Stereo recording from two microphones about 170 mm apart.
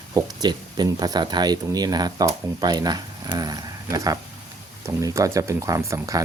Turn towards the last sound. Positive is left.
turn(degrees=-20)  # may be behind; listen again after turning